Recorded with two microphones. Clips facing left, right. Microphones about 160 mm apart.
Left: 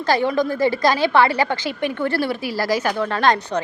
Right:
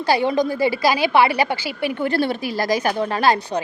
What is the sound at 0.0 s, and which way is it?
Speech, 15° right (ahead or behind).